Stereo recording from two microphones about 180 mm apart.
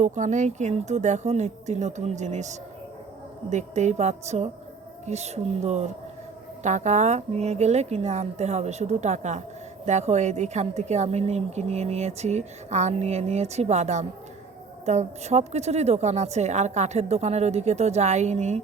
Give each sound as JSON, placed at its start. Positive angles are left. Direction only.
{"t": 0.0, "sound": "a woman's voice", "side_deg": -40}